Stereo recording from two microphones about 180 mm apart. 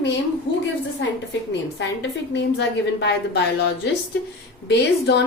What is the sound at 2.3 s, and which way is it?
A woman's voice, 75° left (ahead or behind).